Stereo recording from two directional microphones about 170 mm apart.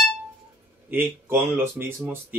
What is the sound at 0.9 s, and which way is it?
Speech, 10° right (ahead or behind).